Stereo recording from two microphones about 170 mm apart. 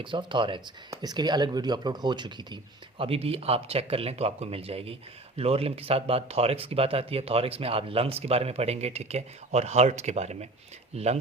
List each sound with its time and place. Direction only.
0.0 s speech: 30° right (ahead or behind)